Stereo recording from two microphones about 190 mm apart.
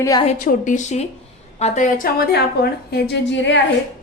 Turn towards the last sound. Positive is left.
turn(degrees=70)  # may be behind; listen again after turning